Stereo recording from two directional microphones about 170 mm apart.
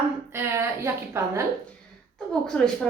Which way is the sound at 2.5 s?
5° left (ahead or behind).